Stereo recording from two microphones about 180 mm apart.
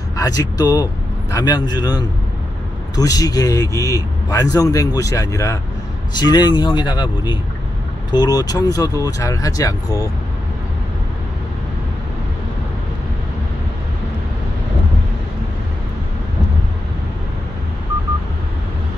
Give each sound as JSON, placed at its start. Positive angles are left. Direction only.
{"t": 0.1, "sound": "a man's voice", "side_deg": 20}